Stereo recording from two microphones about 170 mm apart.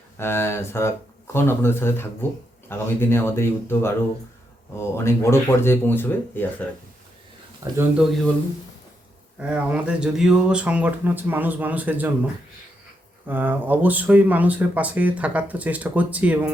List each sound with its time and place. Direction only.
0.2 s speech: 15° left (ahead or behind)
7.6 s speech: 20° right (ahead or behind)
9.4 s speech: 10° right (ahead or behind)